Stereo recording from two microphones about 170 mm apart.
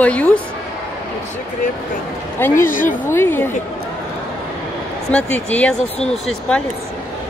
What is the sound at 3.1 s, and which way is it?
Speech, 15° left (ahead or behind).